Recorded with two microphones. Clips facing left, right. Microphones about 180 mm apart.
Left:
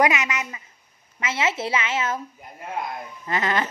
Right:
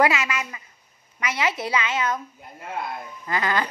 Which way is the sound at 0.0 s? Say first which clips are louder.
Even; 20° left (ahead or behind).